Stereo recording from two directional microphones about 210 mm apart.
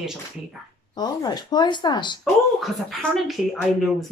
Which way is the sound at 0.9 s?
20° left (ahead or behind).